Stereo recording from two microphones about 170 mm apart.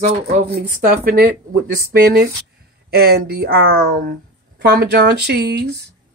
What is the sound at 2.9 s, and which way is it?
Speech, 65° right (ahead or behind).